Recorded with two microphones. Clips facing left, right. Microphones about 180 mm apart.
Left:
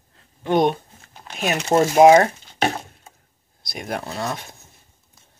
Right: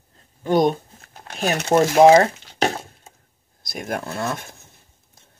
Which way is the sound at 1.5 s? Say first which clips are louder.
Even; 60° right (ahead or behind).